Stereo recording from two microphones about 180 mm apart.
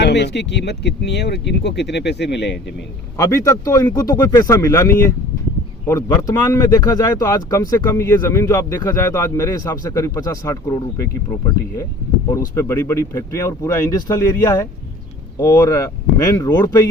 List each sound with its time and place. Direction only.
0.0 s speech: 70° left (ahead or behind)
3.2 s speech: 20° left (ahead or behind)